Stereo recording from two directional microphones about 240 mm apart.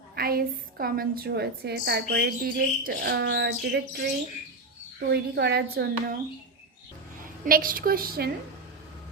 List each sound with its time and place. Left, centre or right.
0.2 s a woman's voice: right
5.0 s a woman's voice: right
7.4 s a woman's voice: right